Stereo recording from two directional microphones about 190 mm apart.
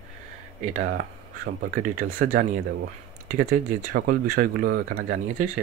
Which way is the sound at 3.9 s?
50° right (ahead or behind).